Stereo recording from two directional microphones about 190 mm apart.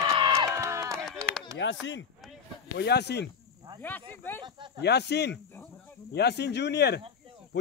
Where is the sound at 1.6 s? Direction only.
70° left (ahead or behind).